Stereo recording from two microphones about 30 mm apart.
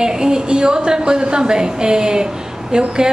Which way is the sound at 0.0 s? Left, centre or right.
Right.